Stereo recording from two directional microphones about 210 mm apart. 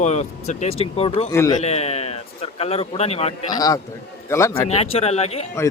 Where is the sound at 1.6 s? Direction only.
30° left (ahead or behind).